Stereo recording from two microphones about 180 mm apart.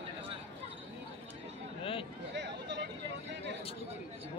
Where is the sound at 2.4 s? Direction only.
75° right (ahead or behind).